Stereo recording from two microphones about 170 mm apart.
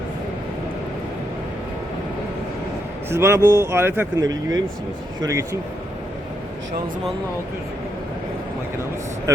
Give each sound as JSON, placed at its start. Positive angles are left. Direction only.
{"t": 3.1, "sound": "speech", "side_deg": -15}